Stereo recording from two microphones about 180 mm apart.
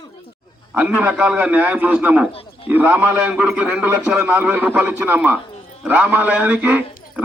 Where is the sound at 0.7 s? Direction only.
5° right (ahead or behind).